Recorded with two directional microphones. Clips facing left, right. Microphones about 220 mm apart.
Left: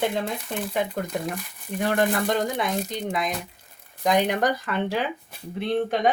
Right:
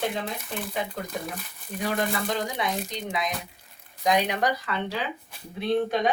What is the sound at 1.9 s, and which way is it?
Speech, 60° left (ahead or behind).